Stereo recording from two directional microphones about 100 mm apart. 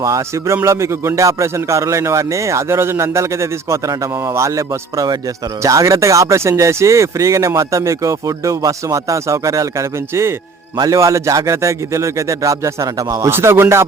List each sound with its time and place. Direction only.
0.0 s speech: 30° right (ahead or behind)